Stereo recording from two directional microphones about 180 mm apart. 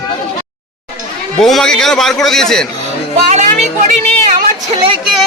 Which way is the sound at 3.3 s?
40° right (ahead or behind).